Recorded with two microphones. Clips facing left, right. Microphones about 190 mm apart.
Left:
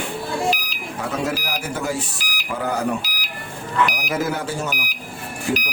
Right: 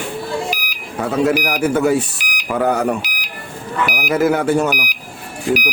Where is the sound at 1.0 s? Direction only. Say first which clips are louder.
Right 8 dB; 60° right (ahead or behind).